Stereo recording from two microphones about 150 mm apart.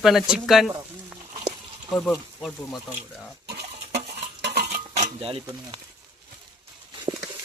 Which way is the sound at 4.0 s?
40° right (ahead or behind).